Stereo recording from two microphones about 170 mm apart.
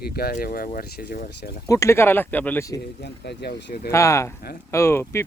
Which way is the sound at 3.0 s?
80° left.